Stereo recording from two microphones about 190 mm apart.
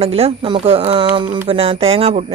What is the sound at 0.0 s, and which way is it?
Speech, 30° right (ahead or behind).